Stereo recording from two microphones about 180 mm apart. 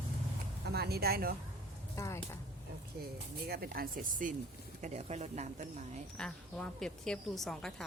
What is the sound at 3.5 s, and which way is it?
Speech, 55° right (ahead or behind).